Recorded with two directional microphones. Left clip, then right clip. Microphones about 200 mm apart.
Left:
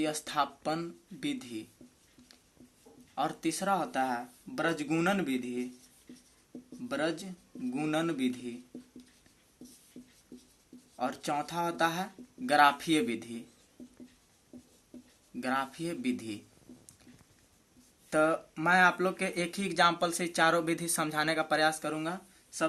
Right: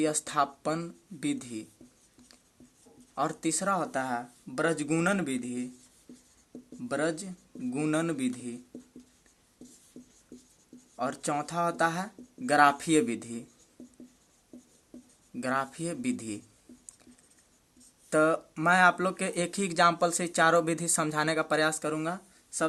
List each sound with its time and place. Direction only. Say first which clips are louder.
0.0 s speech: right 3 dB; 40° right (ahead or behind)
3.2 s speech: right 2 dB; 40° right (ahead or behind)
6.8 s speech: right 3 dB; 40° right (ahead or behind)
10.9 s speech: right 2 dB; 40° right (ahead or behind)
15.4 s speech: right 2 dB; 40° right (ahead or behind)
18.1 s speech: right 3 dB; 40° right (ahead or behind)